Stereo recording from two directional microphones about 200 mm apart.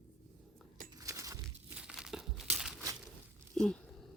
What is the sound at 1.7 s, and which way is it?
Crumpling, 5° right (ahead or behind).